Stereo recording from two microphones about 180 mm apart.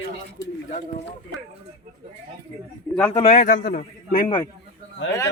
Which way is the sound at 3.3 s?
45° left (ahead or behind).